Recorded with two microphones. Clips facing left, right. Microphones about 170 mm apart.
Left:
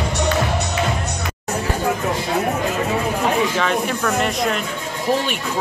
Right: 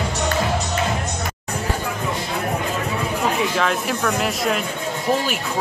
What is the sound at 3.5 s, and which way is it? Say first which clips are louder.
Speech: left 1 dB; centre (ahead or behind).